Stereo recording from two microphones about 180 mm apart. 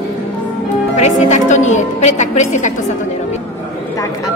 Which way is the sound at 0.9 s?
40° left (ahead or behind).